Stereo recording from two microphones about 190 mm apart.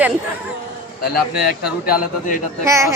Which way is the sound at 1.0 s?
55° left (ahead or behind).